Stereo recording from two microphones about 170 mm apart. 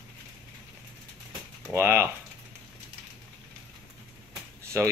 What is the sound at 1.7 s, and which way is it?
Speech, 15° right (ahead or behind).